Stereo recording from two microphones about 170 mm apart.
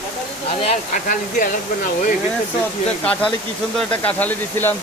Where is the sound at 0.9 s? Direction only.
50° left (ahead or behind).